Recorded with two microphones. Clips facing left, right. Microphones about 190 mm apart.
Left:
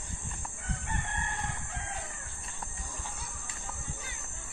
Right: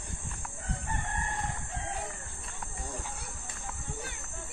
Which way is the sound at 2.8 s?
60° right (ahead or behind).